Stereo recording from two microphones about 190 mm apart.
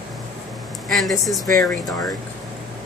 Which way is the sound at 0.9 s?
Centre (ahead or behind).